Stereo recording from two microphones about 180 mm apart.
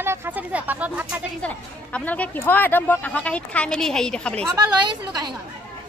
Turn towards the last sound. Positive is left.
turn(degrees=-20)  # may be behind; listen again after turning